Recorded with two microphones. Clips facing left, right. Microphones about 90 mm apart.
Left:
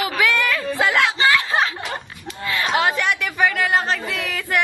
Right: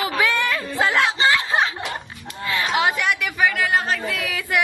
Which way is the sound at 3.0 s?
Centre (ahead or behind).